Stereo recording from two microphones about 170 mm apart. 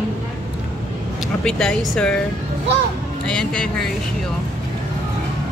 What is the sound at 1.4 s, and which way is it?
Speech, 5° left (ahead or behind).